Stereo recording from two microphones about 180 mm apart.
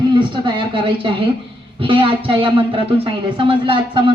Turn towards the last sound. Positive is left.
turn(degrees=-30)  # may be behind; listen again after turning